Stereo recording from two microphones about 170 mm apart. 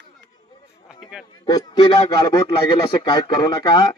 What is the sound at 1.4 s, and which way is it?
A man's voice, 25° left (ahead or behind).